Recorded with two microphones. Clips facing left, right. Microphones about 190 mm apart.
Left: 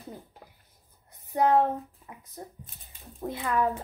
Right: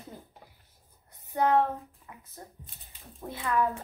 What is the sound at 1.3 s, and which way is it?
Speech, 25° left (ahead or behind).